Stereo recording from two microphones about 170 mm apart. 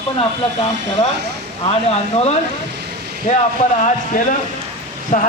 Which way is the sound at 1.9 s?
40° left (ahead or behind).